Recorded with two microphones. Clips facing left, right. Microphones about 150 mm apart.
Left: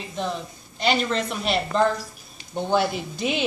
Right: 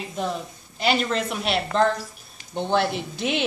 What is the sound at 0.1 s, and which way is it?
Speech, 5° right (ahead or behind).